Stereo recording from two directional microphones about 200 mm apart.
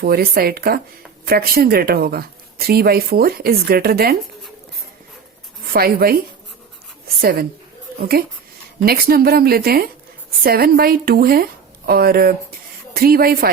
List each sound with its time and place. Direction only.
0.0 s a woman's voice: 50° right (ahead or behind)
5.6 s a woman's voice: 50° right (ahead or behind)
7.2 s a woman's voice: 50° right (ahead or behind)